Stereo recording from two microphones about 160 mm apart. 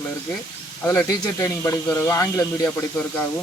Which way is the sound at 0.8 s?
15° left (ahead or behind).